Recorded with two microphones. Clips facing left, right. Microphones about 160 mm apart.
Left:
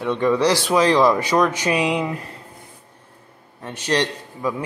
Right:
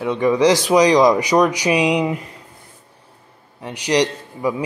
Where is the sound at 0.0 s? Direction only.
10° right (ahead or behind).